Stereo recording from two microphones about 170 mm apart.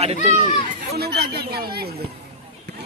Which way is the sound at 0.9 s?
70° right (ahead or behind).